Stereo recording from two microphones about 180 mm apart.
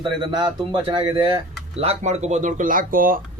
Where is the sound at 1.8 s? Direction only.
40° right (ahead or behind).